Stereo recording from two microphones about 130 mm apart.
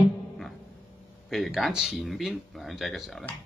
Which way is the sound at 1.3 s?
Centre (ahead or behind).